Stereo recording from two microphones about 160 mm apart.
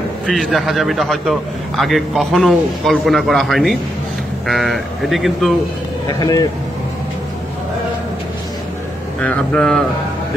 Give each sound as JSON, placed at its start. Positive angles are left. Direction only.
{"t": 0.3, "sound": "a man's voice", "side_deg": 0}
{"t": 6.0, "sound": "speech", "side_deg": 25}
{"t": 9.2, "sound": "a man's voice", "side_deg": 5}